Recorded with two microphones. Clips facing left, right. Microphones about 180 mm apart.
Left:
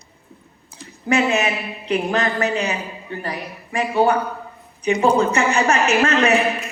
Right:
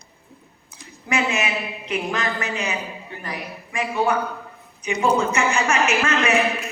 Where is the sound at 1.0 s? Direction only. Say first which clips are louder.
Left 5 dB; 35° left (ahead or behind).